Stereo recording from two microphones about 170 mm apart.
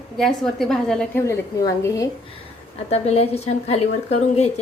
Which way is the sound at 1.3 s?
20° left (ahead or behind).